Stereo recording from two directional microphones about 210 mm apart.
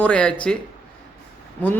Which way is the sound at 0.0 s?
5° left (ahead or behind).